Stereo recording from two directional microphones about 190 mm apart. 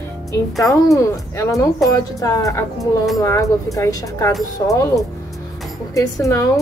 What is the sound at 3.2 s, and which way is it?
Speech, 15° left (ahead or behind).